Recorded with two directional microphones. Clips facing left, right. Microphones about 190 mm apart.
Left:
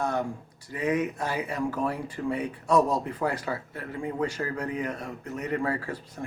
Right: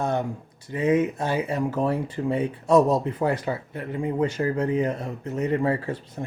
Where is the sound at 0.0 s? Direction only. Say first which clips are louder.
Right 3 dB; 25° right (ahead or behind).